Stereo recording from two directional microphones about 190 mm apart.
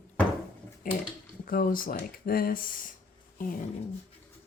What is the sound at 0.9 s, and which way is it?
Speech, 45° left (ahead or behind).